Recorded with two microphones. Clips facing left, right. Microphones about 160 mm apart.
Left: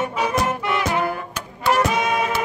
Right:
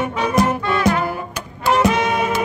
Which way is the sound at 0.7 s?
15° left (ahead or behind).